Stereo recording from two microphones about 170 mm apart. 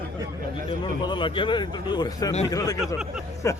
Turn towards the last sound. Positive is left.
turn(degrees=15)  # may be behind; listen again after turning